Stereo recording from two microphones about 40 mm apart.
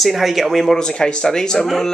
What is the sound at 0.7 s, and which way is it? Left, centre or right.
Speech, centre.